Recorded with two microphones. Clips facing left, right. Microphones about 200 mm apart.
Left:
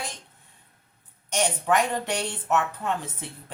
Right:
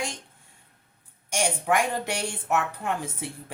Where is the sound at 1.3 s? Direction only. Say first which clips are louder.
Left 1 dB; 10° right (ahead or behind).